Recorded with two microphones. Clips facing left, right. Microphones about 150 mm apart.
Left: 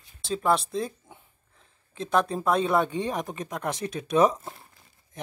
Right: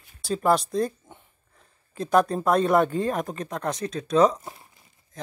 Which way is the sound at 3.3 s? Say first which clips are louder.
Right 2 dB; 15° left (ahead or behind).